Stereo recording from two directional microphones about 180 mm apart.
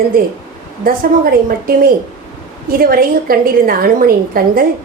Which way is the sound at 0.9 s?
55° right (ahead or behind).